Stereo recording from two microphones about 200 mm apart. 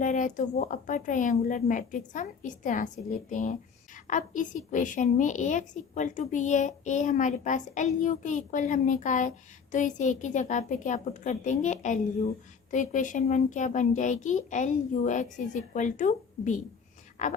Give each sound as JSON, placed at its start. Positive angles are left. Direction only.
{"t": 0.0, "sound": "a woman's voice", "side_deg": 40}